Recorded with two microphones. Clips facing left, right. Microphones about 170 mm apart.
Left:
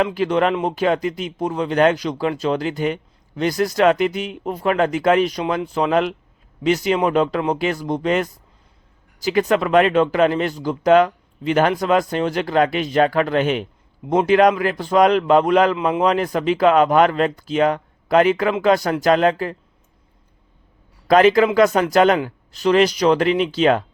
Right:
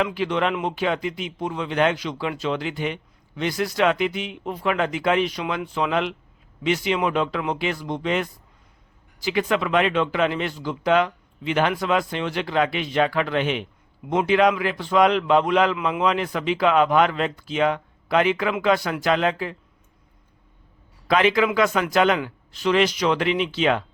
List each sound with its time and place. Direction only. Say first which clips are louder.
0.0 s a man's voice: left 5 dB; 45° left (ahead or behind)
21.1 s speech: left 6 dB; 40° left (ahead or behind)